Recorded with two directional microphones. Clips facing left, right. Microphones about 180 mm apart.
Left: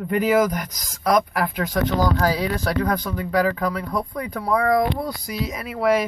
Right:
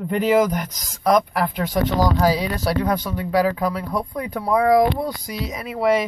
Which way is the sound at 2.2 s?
15° right (ahead or behind).